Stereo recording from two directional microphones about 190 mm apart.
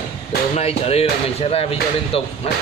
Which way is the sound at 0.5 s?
35° left (ahead or behind).